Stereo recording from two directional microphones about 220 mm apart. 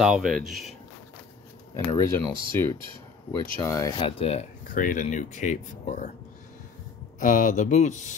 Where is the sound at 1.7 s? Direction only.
15° left (ahead or behind).